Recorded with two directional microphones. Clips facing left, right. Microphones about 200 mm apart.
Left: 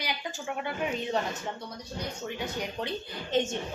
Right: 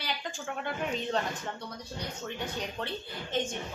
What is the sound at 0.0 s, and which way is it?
A woman's voice, 10° left (ahead or behind).